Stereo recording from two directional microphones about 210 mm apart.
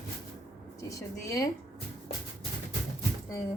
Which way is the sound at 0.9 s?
15° left (ahead or behind).